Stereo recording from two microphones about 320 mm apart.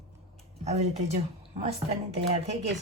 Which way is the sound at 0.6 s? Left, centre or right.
Centre.